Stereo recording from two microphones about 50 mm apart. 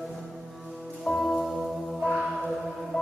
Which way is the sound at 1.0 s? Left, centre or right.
Centre.